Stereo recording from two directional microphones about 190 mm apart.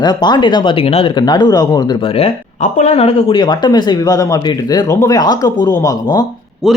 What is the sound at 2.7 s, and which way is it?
Speech, 35° left (ahead or behind).